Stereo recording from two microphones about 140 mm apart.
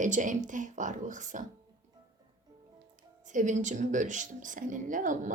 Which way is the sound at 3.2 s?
65° right (ahead or behind).